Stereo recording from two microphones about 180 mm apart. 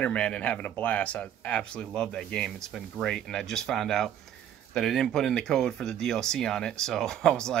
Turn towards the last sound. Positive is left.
turn(degrees=5)  # may be behind; listen again after turning